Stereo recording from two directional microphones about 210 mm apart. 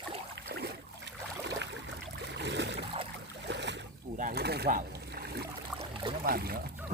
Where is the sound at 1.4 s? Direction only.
55° right (ahead or behind).